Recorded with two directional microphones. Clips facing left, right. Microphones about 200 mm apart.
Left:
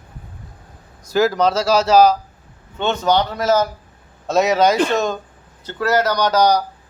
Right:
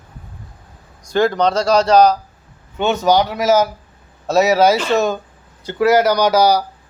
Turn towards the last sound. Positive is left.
turn(degrees=-10)  # may be behind; listen again after turning